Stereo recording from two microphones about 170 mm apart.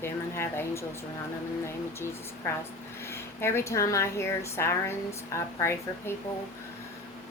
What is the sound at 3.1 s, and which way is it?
Speech, 15° left (ahead or behind).